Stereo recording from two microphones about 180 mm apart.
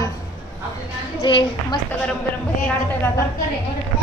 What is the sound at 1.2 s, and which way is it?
Speech, 25° left (ahead or behind).